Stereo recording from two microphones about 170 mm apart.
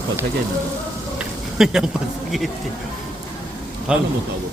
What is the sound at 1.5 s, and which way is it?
Speech, 5° right (ahead or behind).